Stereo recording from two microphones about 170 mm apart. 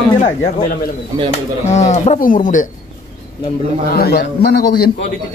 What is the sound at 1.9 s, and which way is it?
Speech, 50° left (ahead or behind).